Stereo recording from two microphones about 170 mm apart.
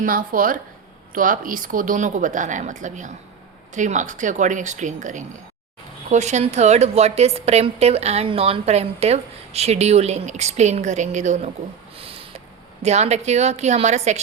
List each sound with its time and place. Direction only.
0.0 s a woman's voice: 55° right (ahead or behind)
11.9 s a sound: 35° right (ahead or behind)
12.8 s a woman's voice: 40° right (ahead or behind)